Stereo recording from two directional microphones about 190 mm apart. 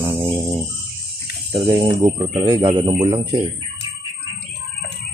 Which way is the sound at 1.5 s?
25° right (ahead or behind).